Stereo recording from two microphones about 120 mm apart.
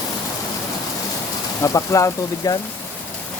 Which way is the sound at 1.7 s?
30° left (ahead or behind).